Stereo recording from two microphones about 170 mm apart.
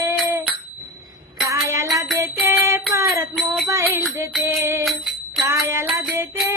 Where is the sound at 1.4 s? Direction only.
15° right (ahead or behind).